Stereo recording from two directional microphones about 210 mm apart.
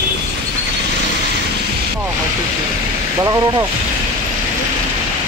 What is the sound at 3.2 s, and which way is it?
Speech, 15° right (ahead or behind).